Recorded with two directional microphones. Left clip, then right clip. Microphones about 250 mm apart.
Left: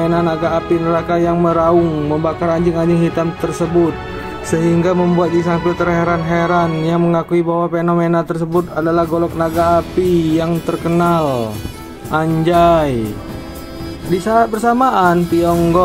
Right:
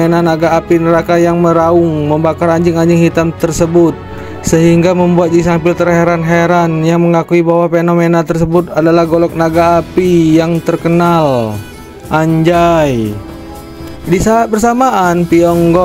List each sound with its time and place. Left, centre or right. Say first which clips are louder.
0.0 s speech: right 5 dB; right
14.1 s speech: right 4 dB; right